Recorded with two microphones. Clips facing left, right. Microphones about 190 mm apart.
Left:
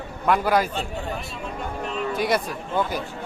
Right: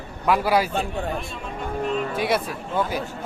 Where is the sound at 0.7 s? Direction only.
55° right (ahead or behind).